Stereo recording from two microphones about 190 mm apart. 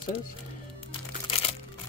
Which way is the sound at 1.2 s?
30° left (ahead or behind).